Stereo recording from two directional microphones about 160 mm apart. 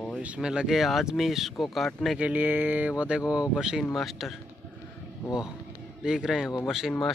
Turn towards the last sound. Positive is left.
turn(degrees=-5)  # may be behind; listen again after turning